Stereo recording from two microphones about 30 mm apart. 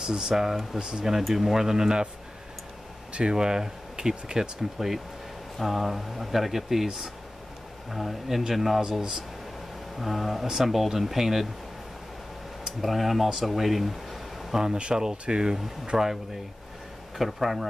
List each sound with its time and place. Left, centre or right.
0.0 s speech: centre
0.7 s speech: right
1.2 s speech: centre
3.1 s a sound: right
3.3 s speech: right
9.9 s speech: centre
12.6 s speech: centre
15.0 s speech: right
17.2 s speech: centre